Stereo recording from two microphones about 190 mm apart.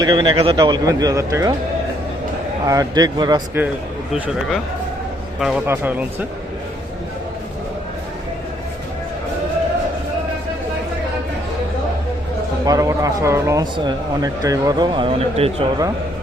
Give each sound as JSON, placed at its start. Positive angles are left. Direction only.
{"t": 0.0, "sound": "speech", "side_deg": -25}
{"t": 2.6, "sound": "speech", "side_deg": -20}
{"t": 4.1, "sound": "speech", "side_deg": 0}
{"t": 12.6, "sound": "speech", "side_deg": -20}